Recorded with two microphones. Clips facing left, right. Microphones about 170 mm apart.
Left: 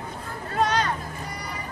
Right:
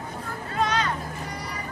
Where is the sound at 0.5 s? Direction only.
40° left (ahead or behind).